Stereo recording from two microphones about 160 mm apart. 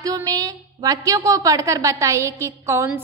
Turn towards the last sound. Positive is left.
turn(degrees=-15)  # may be behind; listen again after turning